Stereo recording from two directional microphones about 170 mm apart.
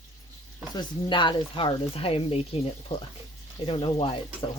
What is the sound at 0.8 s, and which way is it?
Speech, 30° left (ahead or behind).